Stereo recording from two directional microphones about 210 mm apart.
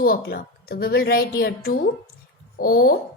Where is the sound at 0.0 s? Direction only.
45° left (ahead or behind).